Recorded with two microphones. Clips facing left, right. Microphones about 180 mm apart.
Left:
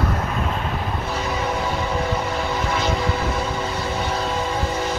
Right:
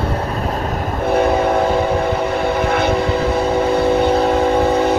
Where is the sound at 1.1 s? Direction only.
55° right (ahead or behind).